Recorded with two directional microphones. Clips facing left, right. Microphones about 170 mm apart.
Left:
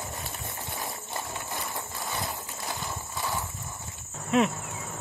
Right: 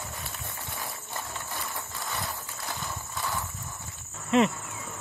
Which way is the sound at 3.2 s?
15° left (ahead or behind).